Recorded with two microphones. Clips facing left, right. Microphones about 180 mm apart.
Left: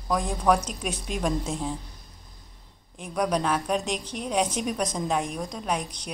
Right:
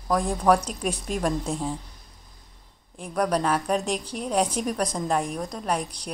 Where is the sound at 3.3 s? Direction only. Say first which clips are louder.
Right 2 dB; 5° right (ahead or behind).